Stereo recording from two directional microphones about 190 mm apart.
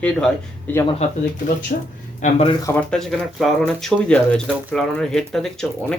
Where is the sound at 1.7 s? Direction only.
45° left (ahead or behind).